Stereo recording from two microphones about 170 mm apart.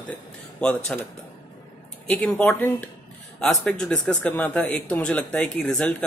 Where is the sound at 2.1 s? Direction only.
5° left (ahead or behind).